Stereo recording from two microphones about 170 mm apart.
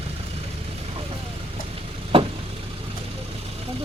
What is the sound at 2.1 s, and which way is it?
Vehicle, 35° right (ahead or behind).